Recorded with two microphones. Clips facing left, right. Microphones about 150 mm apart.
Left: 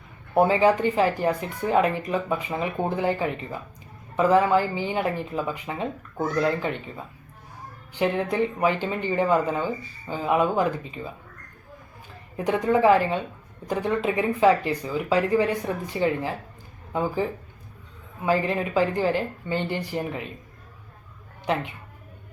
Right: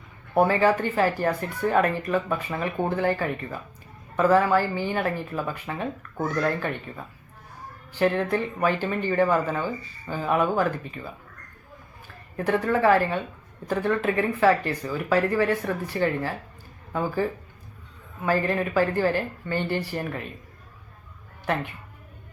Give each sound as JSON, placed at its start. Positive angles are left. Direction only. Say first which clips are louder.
{"t": 0.3, "sound": "speech", "louder": "left 1 dB", "side_deg": 15}
{"t": 12.4, "sound": "speech", "louder": "left 2 dB", "side_deg": 15}
{"t": 18.3, "sound": "speech", "louder": "even", "side_deg": 15}